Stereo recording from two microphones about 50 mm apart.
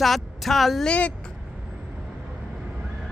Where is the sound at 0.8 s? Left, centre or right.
Left.